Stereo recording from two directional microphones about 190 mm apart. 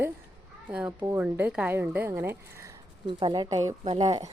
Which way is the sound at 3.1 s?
25° right (ahead or behind).